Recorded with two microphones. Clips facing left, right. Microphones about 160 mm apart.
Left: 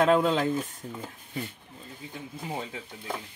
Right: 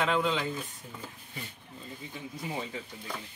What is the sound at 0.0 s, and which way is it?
Speech, 45° left (ahead or behind).